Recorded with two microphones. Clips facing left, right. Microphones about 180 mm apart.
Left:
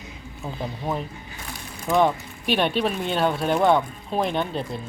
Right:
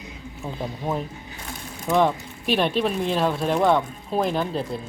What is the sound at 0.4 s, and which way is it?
Speech, centre (ahead or behind).